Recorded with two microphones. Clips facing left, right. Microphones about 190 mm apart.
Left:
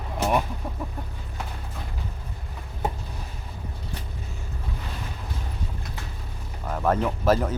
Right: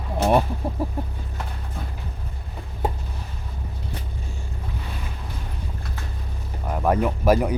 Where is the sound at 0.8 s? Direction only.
35° right (ahead or behind).